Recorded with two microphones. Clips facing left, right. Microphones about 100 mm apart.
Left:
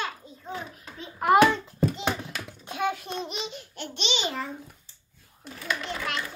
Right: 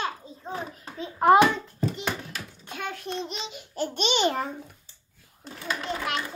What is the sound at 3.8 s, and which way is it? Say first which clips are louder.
Speech: right 7 dB; 45° right (ahead or behind).